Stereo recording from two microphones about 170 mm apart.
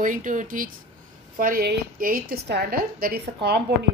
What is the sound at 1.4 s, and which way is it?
A woman's voice, 65° right (ahead or behind).